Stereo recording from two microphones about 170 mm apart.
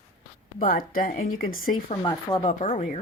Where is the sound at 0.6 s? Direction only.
55° left (ahead or behind).